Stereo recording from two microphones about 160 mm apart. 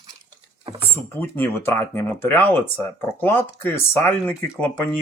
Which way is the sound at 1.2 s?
10° left (ahead or behind).